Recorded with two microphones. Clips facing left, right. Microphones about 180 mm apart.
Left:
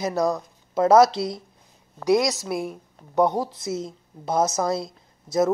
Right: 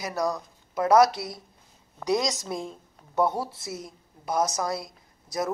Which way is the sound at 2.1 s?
10° left (ahead or behind).